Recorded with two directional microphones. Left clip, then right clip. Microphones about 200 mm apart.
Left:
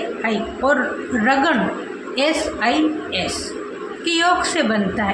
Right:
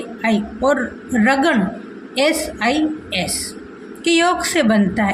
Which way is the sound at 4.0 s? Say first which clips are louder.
Right 1 dB; 50° right (ahead or behind).